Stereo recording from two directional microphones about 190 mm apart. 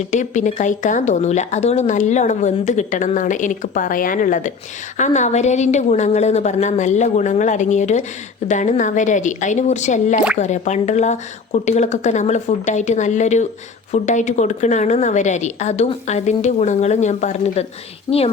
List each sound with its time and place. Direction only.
0.0 s speech: 40° left (ahead or behind)
18.1 s a woman's voice: 20° left (ahead or behind)